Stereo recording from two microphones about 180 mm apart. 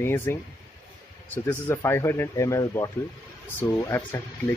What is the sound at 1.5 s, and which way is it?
Speech, 15° left (ahead or behind).